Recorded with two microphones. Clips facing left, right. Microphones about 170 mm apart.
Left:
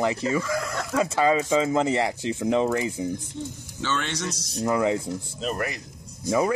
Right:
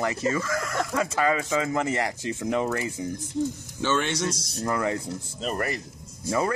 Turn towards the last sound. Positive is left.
turn(degrees=10)  # may be behind; listen again after turning